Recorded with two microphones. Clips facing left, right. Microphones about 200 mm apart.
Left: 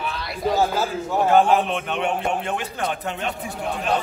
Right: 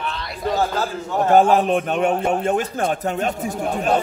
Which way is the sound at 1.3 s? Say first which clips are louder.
Right 3 dB; 40° right (ahead or behind).